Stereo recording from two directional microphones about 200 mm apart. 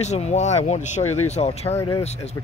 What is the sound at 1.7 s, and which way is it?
Speech, 15° left (ahead or behind).